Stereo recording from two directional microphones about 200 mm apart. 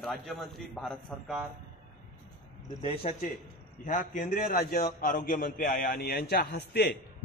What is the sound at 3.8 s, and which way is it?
A man's voice, 40° left (ahead or behind).